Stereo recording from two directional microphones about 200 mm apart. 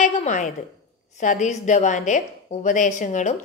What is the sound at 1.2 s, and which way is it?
A woman's voice, 40° left (ahead or behind).